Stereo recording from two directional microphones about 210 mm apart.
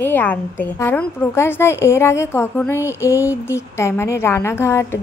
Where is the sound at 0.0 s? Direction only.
10° left (ahead or behind).